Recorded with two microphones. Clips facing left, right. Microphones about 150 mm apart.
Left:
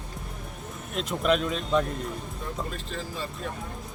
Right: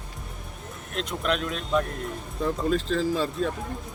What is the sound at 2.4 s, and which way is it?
Speech, 90° right.